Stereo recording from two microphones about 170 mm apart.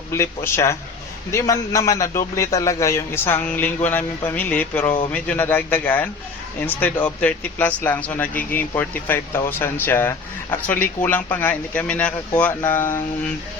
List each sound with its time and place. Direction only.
0.1 s speech: 15° left (ahead or behind)